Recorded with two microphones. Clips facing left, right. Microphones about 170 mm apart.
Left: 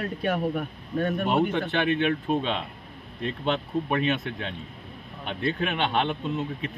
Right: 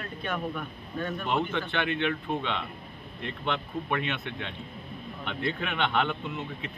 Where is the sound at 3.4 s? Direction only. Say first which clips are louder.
Left 4 dB; 40° left (ahead or behind).